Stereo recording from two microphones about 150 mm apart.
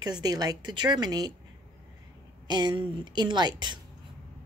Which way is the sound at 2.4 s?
30° right (ahead or behind).